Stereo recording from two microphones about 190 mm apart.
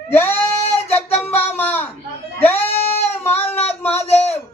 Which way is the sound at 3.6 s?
35° left (ahead or behind).